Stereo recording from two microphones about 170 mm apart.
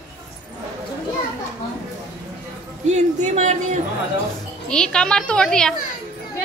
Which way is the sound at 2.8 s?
45° right (ahead or behind).